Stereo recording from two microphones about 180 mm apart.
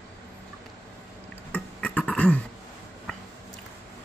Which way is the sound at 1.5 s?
5° left (ahead or behind).